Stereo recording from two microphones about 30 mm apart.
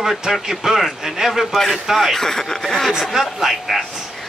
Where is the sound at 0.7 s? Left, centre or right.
Centre.